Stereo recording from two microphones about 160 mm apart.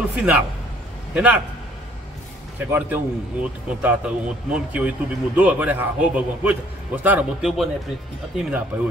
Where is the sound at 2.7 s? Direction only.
10° right (ahead or behind).